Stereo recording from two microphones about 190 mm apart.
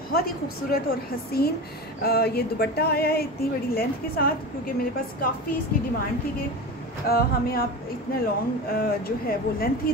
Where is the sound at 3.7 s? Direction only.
50° left (ahead or behind).